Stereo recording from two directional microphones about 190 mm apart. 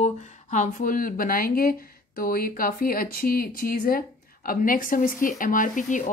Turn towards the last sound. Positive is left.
turn(degrees=40)  # may be behind; listen again after turning